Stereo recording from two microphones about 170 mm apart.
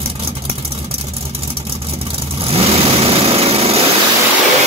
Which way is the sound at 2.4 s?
35° right (ahead or behind).